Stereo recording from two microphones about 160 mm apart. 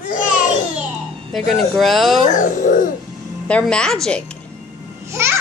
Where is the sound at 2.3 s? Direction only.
55° left (ahead or behind).